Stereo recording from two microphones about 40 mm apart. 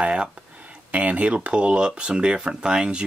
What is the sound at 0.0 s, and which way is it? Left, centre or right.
Speech, right.